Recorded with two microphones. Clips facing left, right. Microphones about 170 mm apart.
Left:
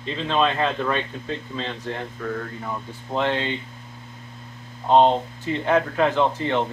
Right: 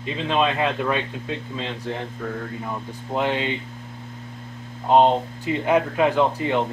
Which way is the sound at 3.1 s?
10° right (ahead or behind).